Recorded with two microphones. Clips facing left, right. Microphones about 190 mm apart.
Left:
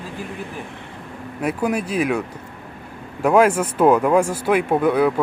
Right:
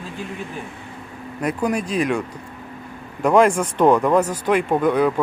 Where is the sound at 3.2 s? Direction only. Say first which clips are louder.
Even; 5° left (ahead or behind).